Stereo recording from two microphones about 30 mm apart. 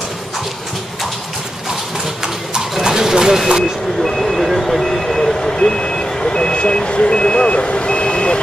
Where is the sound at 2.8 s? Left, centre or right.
Centre.